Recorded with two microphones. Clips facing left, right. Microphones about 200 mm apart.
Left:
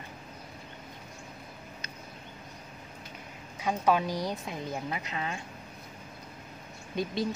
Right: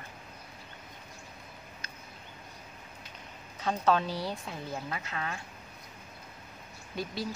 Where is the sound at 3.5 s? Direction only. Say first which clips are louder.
Left 1 dB; 10° left (ahead or behind).